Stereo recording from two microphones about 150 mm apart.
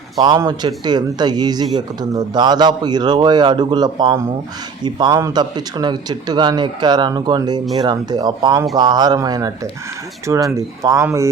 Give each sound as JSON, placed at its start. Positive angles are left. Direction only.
{"t": 0.2, "sound": "speech", "side_deg": -25}